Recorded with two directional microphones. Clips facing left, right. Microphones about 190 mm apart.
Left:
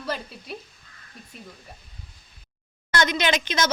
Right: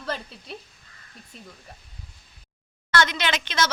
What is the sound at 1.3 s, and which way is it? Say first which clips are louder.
Speech: left 2 dB; 5° left (ahead or behind).